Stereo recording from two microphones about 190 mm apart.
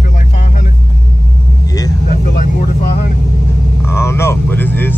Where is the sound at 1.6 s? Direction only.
20° left (ahead or behind).